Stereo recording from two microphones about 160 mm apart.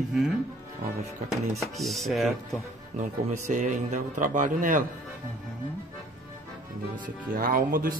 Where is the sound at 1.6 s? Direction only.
Centre (ahead or behind).